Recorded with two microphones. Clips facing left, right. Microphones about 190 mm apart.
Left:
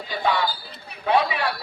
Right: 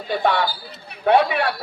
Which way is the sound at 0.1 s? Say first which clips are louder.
Right 4 dB; 60° right (ahead or behind).